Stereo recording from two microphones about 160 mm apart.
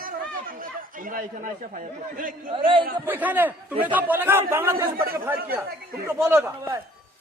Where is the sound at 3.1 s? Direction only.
10° right (ahead or behind).